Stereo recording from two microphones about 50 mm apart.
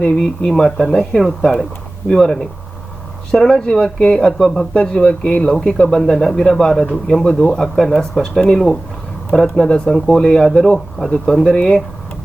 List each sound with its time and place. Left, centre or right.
0.0 s speech: centre
5.9 s speech: centre